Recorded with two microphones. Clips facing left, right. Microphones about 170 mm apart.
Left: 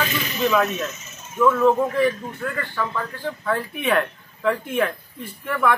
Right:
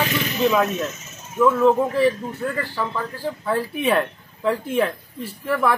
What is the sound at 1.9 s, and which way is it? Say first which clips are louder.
Speech: right 2 dB; 30° right (ahead or behind).